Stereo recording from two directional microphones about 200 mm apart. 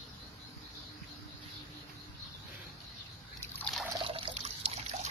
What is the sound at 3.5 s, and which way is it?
Liquid, 5° left (ahead or behind).